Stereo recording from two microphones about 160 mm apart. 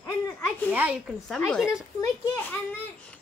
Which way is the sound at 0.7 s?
10° right (ahead or behind).